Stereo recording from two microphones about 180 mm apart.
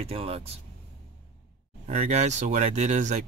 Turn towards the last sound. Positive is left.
turn(degrees=-40)  # may be behind; listen again after turning